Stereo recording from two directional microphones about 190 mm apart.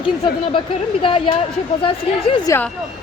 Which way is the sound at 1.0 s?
25° left (ahead or behind).